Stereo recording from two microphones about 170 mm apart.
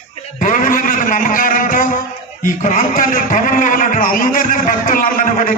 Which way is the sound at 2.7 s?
50° left (ahead or behind).